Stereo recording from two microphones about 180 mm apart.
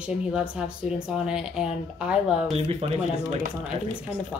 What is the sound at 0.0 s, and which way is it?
Speech, 5° right (ahead or behind).